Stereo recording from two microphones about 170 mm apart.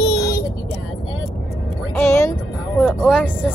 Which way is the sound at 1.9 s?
15° left (ahead or behind).